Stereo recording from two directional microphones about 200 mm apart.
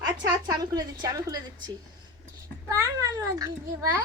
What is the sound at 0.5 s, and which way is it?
A child's voice, 20° right (ahead or behind).